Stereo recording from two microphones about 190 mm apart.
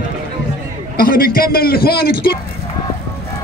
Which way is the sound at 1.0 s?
50° left (ahead or behind).